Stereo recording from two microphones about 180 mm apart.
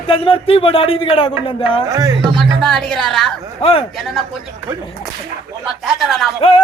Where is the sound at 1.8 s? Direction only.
20° right (ahead or behind).